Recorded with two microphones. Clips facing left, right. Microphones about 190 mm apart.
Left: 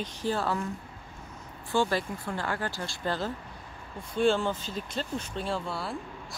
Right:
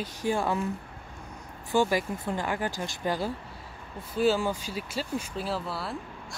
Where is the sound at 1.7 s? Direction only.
15° right (ahead or behind).